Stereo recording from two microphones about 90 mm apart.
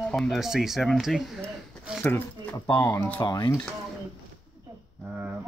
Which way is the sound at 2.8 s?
35° left (ahead or behind).